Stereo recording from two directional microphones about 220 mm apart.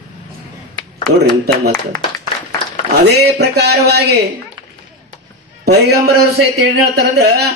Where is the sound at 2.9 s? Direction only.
45° right (ahead or behind).